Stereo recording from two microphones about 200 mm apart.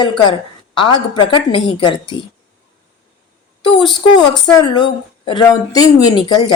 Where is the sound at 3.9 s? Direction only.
20° left (ahead or behind).